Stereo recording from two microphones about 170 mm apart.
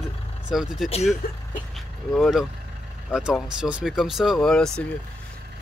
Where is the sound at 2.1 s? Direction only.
Centre (ahead or behind).